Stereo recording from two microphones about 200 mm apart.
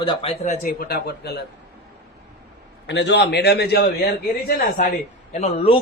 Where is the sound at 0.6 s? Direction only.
45° left (ahead or behind).